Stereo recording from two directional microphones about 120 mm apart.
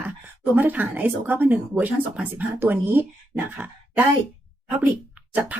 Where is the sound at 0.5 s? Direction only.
15° right (ahead or behind).